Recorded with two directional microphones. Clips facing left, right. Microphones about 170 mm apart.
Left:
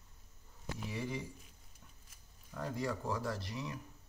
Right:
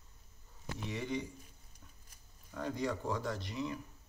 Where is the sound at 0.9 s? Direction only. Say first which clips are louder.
Right 3 dB; 5° left (ahead or behind).